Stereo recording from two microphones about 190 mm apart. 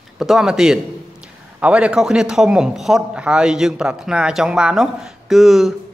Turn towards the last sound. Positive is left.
turn(degrees=0)  # may be behind; listen again after turning